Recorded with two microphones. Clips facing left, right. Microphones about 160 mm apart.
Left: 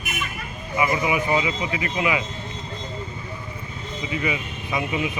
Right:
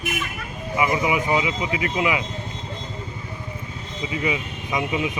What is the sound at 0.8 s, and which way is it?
Speech, 20° right (ahead or behind).